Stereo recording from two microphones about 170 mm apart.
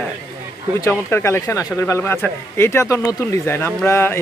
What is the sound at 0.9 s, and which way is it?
Speech, 15° left (ahead or behind).